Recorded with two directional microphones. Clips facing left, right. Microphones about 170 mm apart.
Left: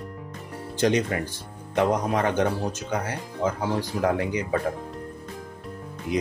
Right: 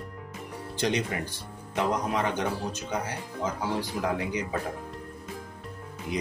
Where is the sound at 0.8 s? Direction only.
50° left (ahead or behind).